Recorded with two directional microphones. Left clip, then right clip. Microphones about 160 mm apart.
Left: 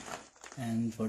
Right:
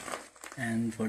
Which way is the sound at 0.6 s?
20° left (ahead or behind).